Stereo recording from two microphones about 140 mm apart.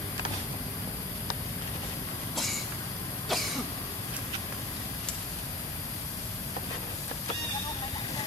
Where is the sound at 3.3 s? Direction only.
Centre (ahead or behind).